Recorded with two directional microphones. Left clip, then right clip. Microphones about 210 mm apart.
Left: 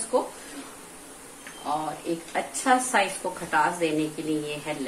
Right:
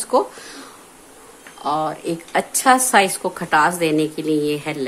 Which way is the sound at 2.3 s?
50° right (ahead or behind).